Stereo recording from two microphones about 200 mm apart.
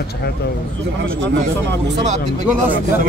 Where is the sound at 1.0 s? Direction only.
60° right (ahead or behind).